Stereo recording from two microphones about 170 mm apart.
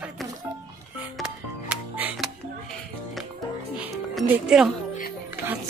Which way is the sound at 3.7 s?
5° right (ahead or behind).